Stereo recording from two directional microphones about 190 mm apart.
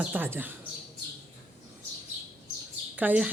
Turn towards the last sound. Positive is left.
turn(degrees=-10)  # may be behind; listen again after turning